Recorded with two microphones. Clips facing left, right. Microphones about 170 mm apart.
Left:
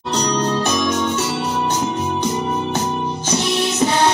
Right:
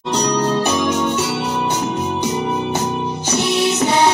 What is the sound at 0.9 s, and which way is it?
Music, 10° right (ahead or behind).